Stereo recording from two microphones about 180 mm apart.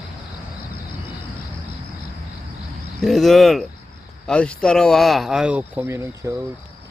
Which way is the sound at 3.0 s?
Centre (ahead or behind).